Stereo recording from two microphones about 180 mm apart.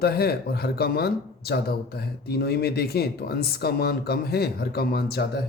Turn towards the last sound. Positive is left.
turn(degrees=60)  # may be behind; listen again after turning